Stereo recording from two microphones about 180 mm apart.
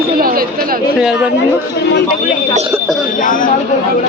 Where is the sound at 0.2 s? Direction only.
55° right (ahead or behind).